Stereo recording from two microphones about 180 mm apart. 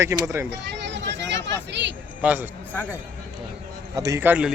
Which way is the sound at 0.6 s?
70° right (ahead or behind).